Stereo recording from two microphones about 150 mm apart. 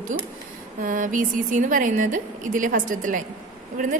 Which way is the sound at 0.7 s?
60° right (ahead or behind).